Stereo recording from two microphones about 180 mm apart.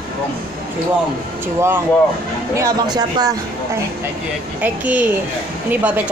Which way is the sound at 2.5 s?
20° right (ahead or behind).